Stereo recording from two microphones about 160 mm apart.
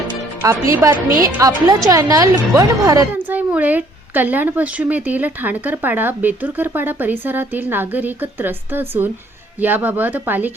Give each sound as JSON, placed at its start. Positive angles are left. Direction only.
{"t": 0.4, "sound": "a woman's voice", "side_deg": -20}
{"t": 3.2, "sound": "speech", "side_deg": -10}